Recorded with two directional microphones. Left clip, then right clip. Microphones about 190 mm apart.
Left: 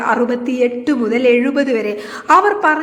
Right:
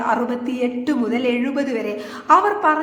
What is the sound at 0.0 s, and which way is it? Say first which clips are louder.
A woman's voice: left 5 dB; 20° left (ahead or behind).